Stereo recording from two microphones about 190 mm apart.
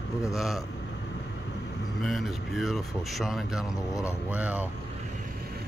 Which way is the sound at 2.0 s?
Centre (ahead or behind).